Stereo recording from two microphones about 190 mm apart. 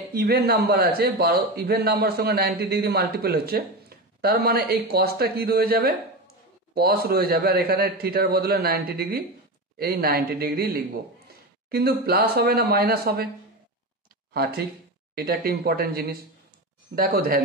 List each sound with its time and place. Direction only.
0.1 s a man's voice: 55° right (ahead or behind)
14.3 s a man's voice: 55° right (ahead or behind)